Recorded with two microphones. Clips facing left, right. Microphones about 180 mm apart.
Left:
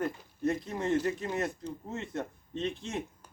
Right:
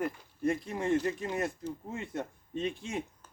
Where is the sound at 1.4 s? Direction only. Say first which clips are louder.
Even; 10° right (ahead or behind).